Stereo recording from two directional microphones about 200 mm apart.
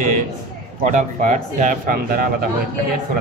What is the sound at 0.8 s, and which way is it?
A man's voice, 40° right (ahead or behind).